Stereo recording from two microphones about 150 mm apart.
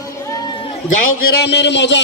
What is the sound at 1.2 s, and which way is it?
Speech, 90° left.